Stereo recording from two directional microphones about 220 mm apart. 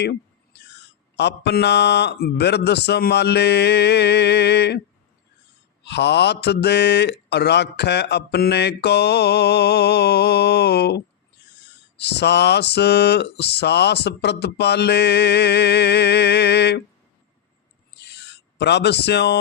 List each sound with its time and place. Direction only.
0.0 s speech: 50° left (ahead or behind)
5.8 s speech: 50° left (ahead or behind)
11.4 s owl: 50° left (ahead or behind)
11.9 s speech: 50° left (ahead or behind)
18.0 s a sound: 50° left (ahead or behind)